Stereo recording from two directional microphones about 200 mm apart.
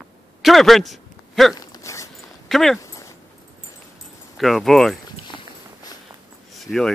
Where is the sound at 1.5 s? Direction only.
20° left (ahead or behind).